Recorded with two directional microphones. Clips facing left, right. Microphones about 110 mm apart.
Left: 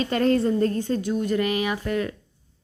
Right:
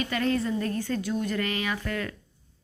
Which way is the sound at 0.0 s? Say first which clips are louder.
Left 6 dB; 35° left (ahead or behind).